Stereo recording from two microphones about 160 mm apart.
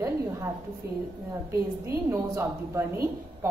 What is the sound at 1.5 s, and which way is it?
A woman's voice, 20° right (ahead or behind).